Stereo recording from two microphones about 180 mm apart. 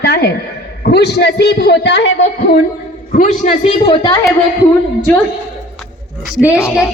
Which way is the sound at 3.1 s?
45° left (ahead or behind).